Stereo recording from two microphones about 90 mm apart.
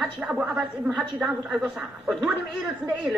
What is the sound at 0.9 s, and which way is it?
Speech, 5° right (ahead or behind).